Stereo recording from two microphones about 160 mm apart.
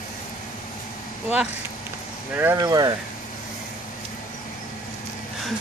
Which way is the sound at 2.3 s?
15° right (ahead or behind).